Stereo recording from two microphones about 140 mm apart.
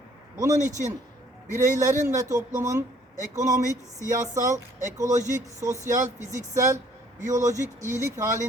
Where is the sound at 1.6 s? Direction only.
20° right (ahead or behind).